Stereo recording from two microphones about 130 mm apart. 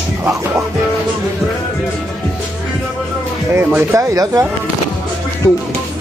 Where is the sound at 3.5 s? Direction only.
15° right (ahead or behind).